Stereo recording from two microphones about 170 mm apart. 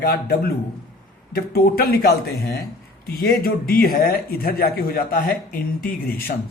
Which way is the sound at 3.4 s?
60° left (ahead or behind).